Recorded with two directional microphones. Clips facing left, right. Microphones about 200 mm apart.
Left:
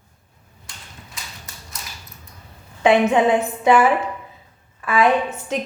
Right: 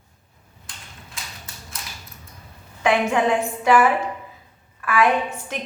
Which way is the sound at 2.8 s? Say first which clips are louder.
Left 5 dB; 25° left (ahead or behind).